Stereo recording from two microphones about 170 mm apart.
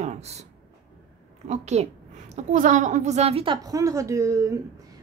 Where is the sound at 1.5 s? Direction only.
40° right (ahead or behind).